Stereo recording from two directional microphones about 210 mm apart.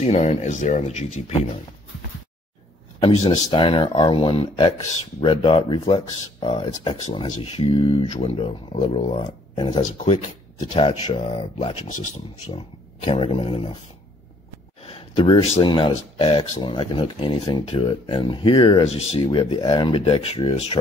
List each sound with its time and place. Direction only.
0.0 s speech: 35° left (ahead or behind)
3.0 s speech: 25° left (ahead or behind)
9.8 s speech: 35° left (ahead or behind)
14.9 s speech: 20° left (ahead or behind)